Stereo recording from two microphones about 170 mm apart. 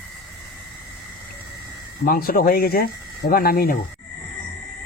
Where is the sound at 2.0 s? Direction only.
60° left (ahead or behind).